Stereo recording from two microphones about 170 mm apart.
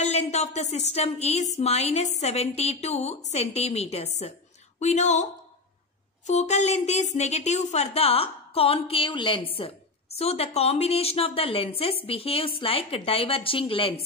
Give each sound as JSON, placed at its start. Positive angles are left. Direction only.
{"t": 0.0, "sound": "a woman's voice", "side_deg": 40}